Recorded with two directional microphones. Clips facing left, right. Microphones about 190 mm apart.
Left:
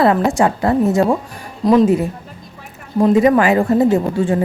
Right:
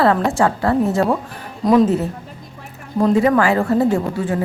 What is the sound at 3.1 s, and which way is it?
Speech, 15° left (ahead or behind).